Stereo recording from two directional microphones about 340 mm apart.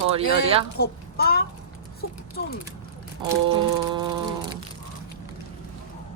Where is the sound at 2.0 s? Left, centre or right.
Left.